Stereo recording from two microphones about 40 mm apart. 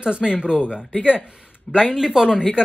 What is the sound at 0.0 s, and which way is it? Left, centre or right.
Speech, right.